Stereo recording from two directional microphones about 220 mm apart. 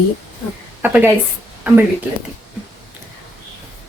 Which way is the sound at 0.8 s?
10° right (ahead or behind).